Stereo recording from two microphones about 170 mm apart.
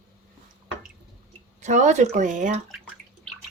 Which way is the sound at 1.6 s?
45° right (ahead or behind).